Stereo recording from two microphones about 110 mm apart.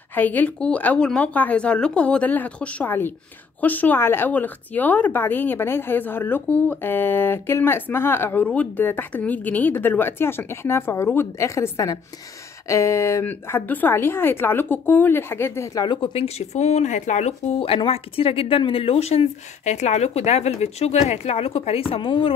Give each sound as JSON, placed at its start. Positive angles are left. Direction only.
{"t": 0.1, "sound": "speech", "side_deg": 15}
{"t": 15.8, "sound": "speech", "side_deg": 50}
{"t": 17.6, "sound": "speech", "side_deg": 55}